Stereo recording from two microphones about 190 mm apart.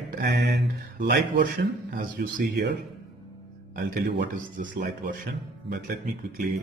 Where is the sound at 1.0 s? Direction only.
50° right (ahead or behind).